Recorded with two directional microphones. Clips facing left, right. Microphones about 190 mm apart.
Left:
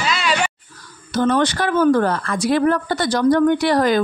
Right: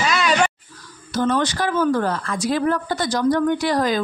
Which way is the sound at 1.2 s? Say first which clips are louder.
Left 3 dB; 60° left (ahead or behind).